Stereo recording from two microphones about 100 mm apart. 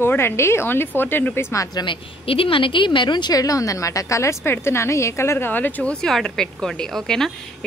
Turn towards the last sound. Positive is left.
turn(degrees=5)  # may be behind; listen again after turning